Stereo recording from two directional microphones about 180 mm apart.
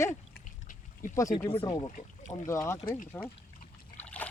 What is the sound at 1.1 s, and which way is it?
Speech, 15° left (ahead or behind).